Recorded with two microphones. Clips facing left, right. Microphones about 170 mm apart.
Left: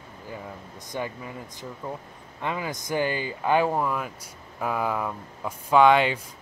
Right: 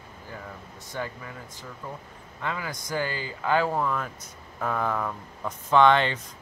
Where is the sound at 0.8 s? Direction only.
15° left (ahead or behind).